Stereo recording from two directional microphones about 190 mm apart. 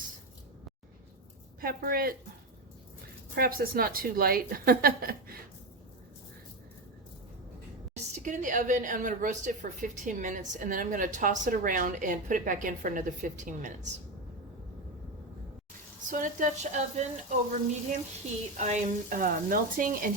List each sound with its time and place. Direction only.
1.6 s a woman's voice: 50° right (ahead or behind)
3.3 s a woman's voice: 50° right (ahead or behind)
8.1 s a woman's voice: 40° right (ahead or behind)
16.0 s a woman's voice: 45° right (ahead or behind)
18.5 s a woman's voice: 40° right (ahead or behind)